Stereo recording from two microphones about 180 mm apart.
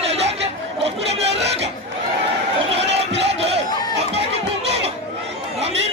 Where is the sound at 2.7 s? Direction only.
35° right (ahead or behind).